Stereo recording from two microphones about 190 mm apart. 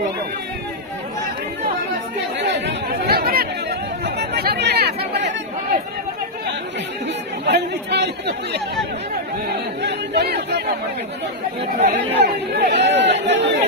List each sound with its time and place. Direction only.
2.4 s chatter: 65° right (ahead or behind)
7.4 s speech: 65° right (ahead or behind)
9.8 s speech: 65° right (ahead or behind)
12.2 s speech: 60° right (ahead or behind)